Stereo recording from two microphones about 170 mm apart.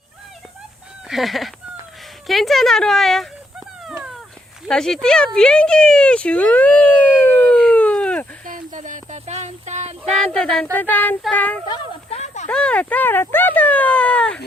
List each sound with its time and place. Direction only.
1.0 s a woman's voice: centre (ahead or behind)
3.8 s dog: 5° right (ahead or behind)
4.7 s speech: 5° left (ahead or behind)
8.4 s a sound: 50° right (ahead or behind)
10.2 s speech: 5° left (ahead or behind)
12.1 s a sound: 40° left (ahead or behind)
12.5 s speech: 5° left (ahead or behind)